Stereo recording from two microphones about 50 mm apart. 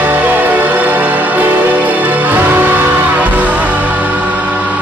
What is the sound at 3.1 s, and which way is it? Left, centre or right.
Music, right.